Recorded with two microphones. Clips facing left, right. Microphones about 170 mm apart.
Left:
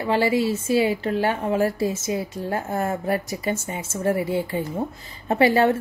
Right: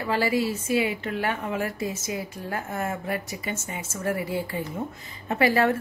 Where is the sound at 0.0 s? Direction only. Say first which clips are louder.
Left 4 dB; 25° left (ahead or behind).